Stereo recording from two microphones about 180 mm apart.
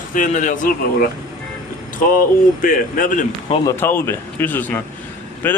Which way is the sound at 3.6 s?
10° left (ahead or behind).